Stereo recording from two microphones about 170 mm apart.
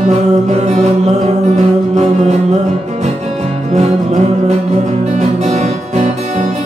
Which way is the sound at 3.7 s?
40° right (ahead or behind).